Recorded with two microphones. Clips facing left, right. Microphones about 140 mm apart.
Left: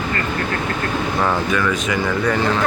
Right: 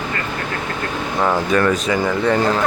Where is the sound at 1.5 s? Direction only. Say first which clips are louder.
Right 3 dB; 40° right (ahead or behind).